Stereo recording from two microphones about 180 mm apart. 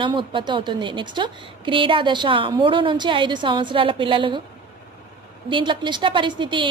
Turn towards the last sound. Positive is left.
turn(degrees=-25)  # may be behind; listen again after turning